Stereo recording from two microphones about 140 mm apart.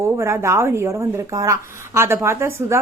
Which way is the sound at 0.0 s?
20° right (ahead or behind).